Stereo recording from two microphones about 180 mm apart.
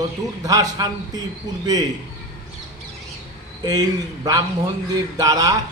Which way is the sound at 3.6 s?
20° right (ahead or behind).